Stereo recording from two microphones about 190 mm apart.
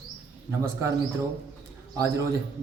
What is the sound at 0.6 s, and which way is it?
Speech, 15° right (ahead or behind).